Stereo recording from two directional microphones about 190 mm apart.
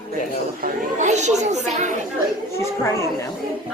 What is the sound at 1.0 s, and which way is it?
Speech, 40° right (ahead or behind).